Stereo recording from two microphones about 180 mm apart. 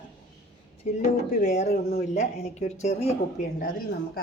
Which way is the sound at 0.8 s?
40° left (ahead or behind).